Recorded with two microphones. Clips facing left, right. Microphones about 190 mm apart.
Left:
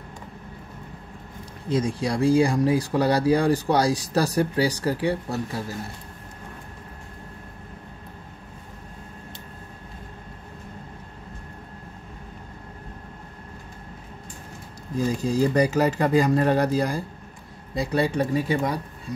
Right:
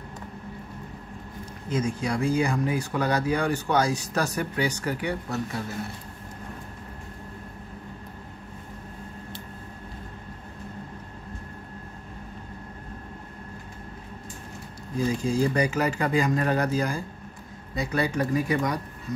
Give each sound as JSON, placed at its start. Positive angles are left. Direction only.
{"t": 1.7, "sound": "speech", "side_deg": 30}
{"t": 15.2, "sound": "speech", "side_deg": 35}